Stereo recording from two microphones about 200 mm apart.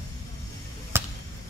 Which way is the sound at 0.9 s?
10° right (ahead or behind).